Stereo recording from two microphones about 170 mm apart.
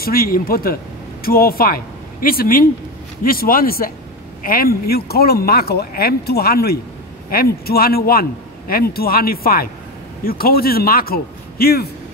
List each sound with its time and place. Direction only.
0.0 s a man's voice: 60° left (ahead or behind)